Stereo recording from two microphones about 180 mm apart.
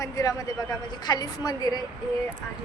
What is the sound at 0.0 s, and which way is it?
A man's voice, 20° left (ahead or behind).